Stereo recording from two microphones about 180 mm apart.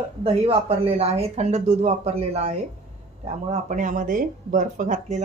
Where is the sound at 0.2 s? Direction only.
35° right (ahead or behind).